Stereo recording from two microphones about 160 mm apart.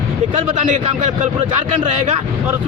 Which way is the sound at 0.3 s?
50° right (ahead or behind).